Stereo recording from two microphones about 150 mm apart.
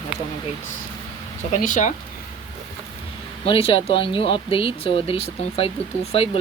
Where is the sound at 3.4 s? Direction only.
40° left (ahead or behind).